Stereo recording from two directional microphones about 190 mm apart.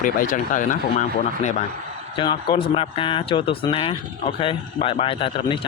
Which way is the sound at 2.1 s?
25° left (ahead or behind).